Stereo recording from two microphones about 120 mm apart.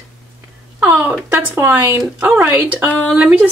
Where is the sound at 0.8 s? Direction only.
20° right (ahead or behind).